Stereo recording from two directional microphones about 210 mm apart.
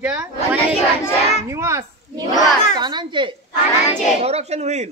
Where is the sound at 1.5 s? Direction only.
15° right (ahead or behind); by 4.9 s 30° right (ahead or behind).